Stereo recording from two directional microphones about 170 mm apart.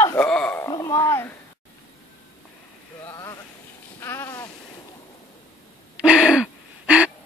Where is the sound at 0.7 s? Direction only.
20° left (ahead or behind).